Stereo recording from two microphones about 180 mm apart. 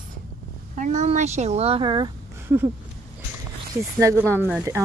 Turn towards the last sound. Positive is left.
turn(degrees=-15)  # may be behind; listen again after turning